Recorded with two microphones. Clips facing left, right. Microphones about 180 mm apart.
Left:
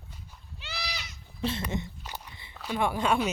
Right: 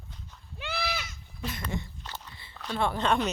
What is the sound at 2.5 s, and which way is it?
Speech, 10° left (ahead or behind).